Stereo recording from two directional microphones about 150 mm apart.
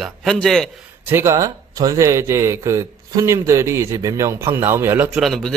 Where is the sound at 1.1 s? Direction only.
15° right (ahead or behind).